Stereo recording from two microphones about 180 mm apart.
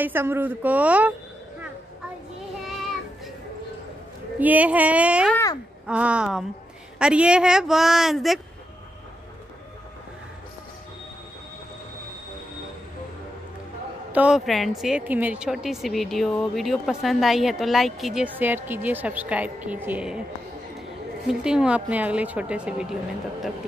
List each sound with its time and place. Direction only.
0.0 s speech: 10° right (ahead or behind)
2.6 s child singing: centre (ahead or behind)
4.4 s speech: 10° right (ahead or behind)
5.3 s speech: 15° left (ahead or behind)
5.9 s speech: 5° right (ahead or behind)
14.1 s speech: 5° right (ahead or behind)
21.3 s speech: 5° right (ahead or behind)